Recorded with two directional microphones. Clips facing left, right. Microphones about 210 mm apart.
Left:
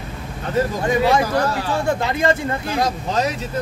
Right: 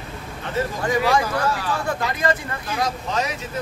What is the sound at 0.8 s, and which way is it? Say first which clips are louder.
Speech: left 1 dB; 25° left (ahead or behind).